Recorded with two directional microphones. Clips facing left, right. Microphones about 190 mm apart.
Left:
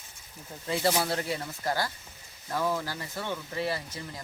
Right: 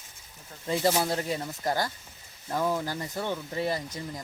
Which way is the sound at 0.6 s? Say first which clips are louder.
Right 2 dB; 20° right (ahead or behind).